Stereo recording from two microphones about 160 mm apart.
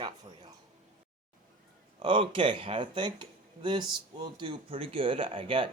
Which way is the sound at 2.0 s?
30° right (ahead or behind).